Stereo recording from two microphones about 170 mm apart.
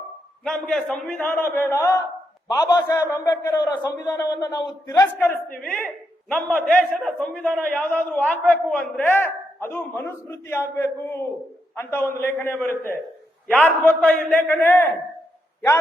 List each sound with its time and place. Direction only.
0.4 s a man's voice: centre (ahead or behind)